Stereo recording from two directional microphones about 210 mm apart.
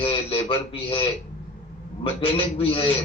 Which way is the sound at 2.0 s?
25° left (ahead or behind).